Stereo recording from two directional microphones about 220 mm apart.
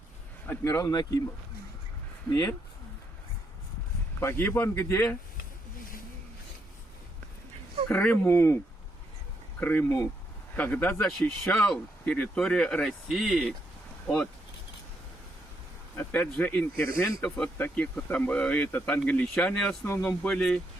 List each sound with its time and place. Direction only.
0.4 s speech: 10° left (ahead or behind)
2.3 s speech: 15° left (ahead or behind)
4.2 s speech: 10° left (ahead or behind)
7.9 s speech: 10° left (ahead or behind)
9.6 s speech: 10° left (ahead or behind)
16.0 s speech: 5° left (ahead or behind)